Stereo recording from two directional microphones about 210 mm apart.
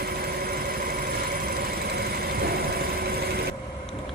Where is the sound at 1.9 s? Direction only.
50° right (ahead or behind).